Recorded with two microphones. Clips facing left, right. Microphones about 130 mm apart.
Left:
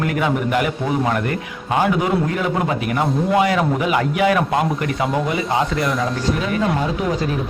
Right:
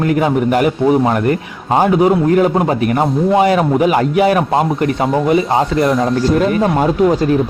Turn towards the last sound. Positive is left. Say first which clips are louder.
# right 8 dB
turn(degrees=-50)  # may be behind; listen again after turning